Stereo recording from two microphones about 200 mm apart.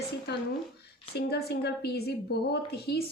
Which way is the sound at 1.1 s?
55° left (ahead or behind).